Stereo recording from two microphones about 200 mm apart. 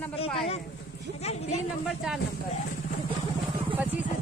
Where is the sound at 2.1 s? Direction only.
5° right (ahead or behind).